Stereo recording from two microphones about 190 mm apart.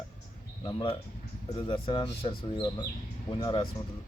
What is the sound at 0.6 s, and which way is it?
Speech, 25° left (ahead or behind).